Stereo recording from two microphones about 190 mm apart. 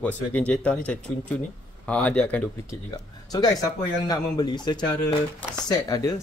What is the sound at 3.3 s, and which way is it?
A man's voice, 20° left (ahead or behind).